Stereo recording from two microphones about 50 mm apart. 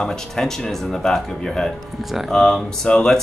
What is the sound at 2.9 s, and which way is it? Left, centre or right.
Speech, left.